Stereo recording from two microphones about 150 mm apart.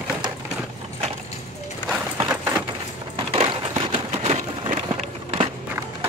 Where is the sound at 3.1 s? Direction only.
35° right (ahead or behind).